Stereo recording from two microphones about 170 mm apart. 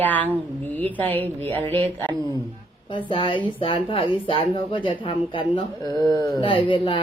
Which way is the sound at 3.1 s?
30° left (ahead or behind).